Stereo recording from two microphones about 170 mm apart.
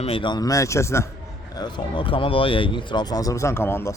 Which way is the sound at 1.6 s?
25° left (ahead or behind).